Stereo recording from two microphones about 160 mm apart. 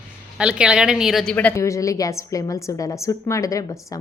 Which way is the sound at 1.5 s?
20° left (ahead or behind).